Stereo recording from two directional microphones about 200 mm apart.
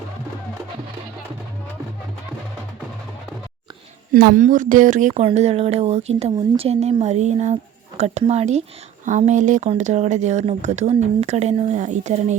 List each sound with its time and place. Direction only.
4.1 s speech: 50° right (ahead or behind)
4.4 s speech: 40° right (ahead or behind)